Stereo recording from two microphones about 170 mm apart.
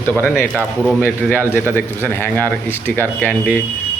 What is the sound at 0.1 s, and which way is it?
Speech, 10° left (ahead or behind).